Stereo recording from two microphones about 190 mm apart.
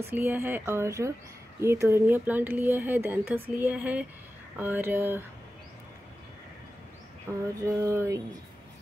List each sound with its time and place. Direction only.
0.0 s speech: 10° right (ahead or behind)
7.6 s speech: 15° right (ahead or behind)